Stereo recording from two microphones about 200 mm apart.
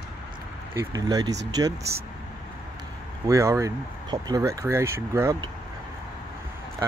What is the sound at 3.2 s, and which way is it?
Speech, 15° right (ahead or behind).